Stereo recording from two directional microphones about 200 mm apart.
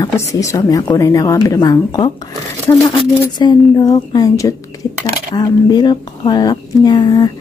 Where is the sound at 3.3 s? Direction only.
20° left (ahead or behind).